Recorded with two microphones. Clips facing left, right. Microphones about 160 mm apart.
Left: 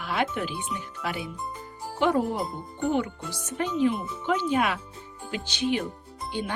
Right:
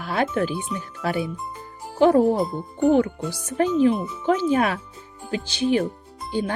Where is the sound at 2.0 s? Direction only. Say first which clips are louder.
Right 8 dB; 35° right (ahead or behind).